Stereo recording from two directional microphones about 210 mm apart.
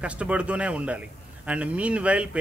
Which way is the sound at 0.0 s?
5° right (ahead or behind).